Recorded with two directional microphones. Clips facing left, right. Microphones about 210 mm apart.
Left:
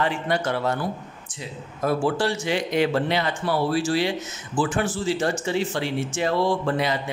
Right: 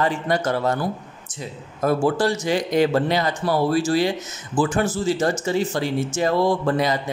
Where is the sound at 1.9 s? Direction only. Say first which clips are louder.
Right 3 dB; 40° right (ahead or behind).